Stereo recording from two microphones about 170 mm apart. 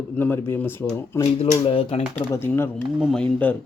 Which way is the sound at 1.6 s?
30° left (ahead or behind).